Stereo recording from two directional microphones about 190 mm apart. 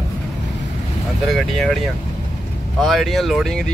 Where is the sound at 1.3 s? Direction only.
Centre (ahead or behind).